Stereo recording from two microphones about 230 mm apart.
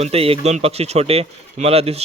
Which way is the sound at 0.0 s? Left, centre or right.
Right.